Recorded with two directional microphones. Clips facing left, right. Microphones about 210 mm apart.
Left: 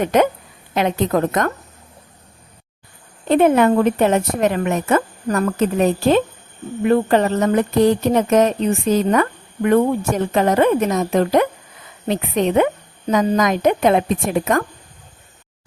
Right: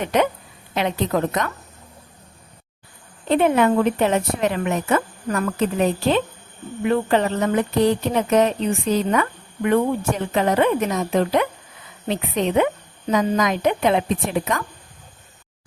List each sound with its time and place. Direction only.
0.0 s speech: 45° left (ahead or behind)
3.2 s speech: 45° left (ahead or behind)